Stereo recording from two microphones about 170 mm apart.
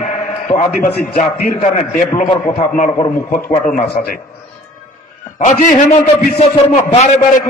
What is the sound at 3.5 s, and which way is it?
Speech, 50° left (ahead or behind).